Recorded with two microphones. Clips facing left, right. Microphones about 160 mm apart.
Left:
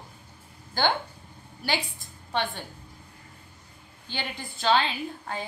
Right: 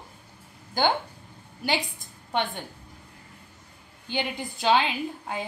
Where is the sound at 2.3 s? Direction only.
20° right (ahead or behind).